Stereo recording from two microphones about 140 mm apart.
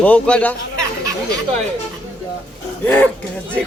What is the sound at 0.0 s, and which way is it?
Speech, 10° left (ahead or behind).